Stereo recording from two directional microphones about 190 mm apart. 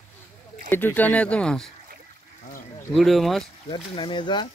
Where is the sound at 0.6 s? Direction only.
10° left (ahead or behind).